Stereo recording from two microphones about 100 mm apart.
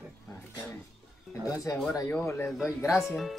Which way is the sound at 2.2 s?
30° left (ahead or behind).